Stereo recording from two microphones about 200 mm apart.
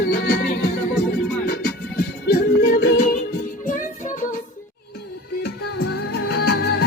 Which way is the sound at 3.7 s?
40° left (ahead or behind).